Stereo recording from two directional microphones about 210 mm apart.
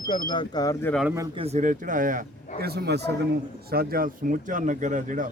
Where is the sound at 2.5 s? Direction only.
50° right (ahead or behind).